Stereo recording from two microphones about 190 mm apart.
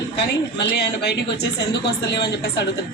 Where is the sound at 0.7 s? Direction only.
60° left (ahead or behind).